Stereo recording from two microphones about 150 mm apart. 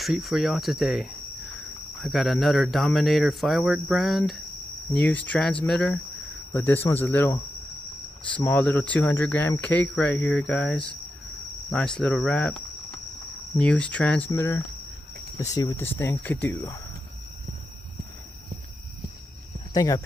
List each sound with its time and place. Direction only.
0.0 s speech: centre (ahead or behind)
4.9 s speech: 10° left (ahead or behind)
8.4 s speech: 10° left (ahead or behind)
11.7 s cricket: 5° left (ahead or behind)
13.6 s speech: 5° left (ahead or behind)
14.3 s speech: 20° left (ahead or behind)
19.7 s speech: 25° left (ahead or behind)